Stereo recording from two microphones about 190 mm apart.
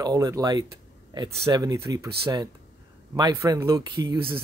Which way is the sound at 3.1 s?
20° right (ahead or behind).